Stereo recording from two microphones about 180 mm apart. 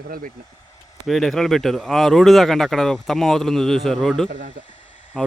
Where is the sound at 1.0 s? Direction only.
Centre (ahead or behind).